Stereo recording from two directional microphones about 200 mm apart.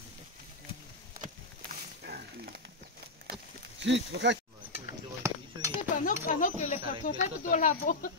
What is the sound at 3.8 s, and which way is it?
Speech, 60° right (ahead or behind).